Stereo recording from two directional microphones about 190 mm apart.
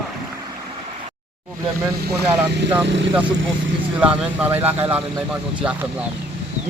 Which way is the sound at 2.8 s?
70° right (ahead or behind).